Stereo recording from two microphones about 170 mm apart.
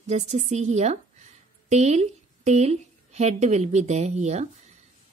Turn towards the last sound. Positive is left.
turn(degrees=-40)  # may be behind; listen again after turning